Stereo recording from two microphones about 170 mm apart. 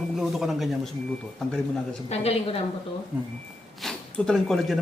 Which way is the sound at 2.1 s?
35° left (ahead or behind).